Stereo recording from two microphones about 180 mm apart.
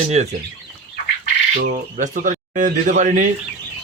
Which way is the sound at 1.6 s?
45° right (ahead or behind).